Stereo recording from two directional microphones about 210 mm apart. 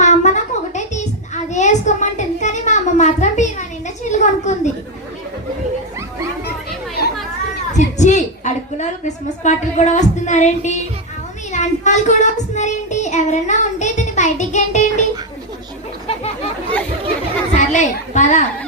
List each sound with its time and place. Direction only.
0.0 s a sound: 35° left (ahead or behind)
7.7 s a woman's voice: 35° left (ahead or behind)
11.5 s child singing: 35° left (ahead or behind)
17.5 s a child's voice: 35° left (ahead or behind)